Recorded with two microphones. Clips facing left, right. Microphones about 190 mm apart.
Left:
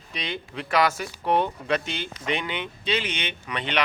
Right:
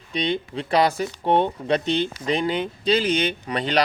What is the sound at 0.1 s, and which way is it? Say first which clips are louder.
Speech: right 9 dB; 30° right (ahead or behind).